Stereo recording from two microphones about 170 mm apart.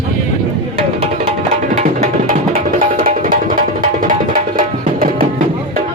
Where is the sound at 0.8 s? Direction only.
35° right (ahead or behind); by 5.8 s 55° right (ahead or behind).